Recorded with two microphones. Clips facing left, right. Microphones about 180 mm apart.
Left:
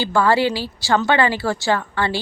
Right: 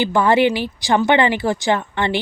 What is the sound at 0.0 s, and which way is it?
A woman's voice, 20° right (ahead or behind).